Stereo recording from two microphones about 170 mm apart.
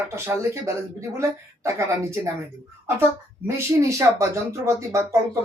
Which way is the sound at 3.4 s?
15° right (ahead or behind).